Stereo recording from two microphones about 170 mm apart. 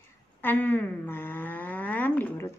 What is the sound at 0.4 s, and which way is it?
Speech, 10° left (ahead or behind).